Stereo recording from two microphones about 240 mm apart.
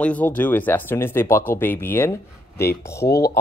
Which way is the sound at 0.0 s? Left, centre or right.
Centre.